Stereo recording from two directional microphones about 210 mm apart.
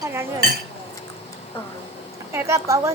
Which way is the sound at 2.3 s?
15° right (ahead or behind).